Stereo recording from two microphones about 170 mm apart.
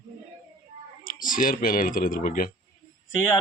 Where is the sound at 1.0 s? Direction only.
55° left (ahead or behind).